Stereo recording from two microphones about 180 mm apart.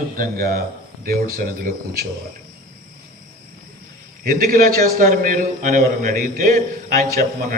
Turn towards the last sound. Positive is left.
turn(degrees=-50)  # may be behind; listen again after turning